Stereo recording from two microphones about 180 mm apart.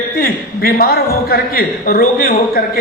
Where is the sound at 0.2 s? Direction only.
55° left (ahead or behind).